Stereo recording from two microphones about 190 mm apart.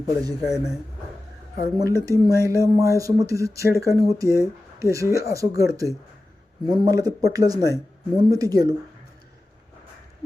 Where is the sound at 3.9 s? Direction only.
55° left (ahead or behind).